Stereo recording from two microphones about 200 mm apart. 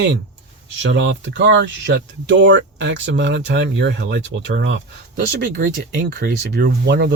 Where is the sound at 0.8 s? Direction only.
65° right (ahead or behind).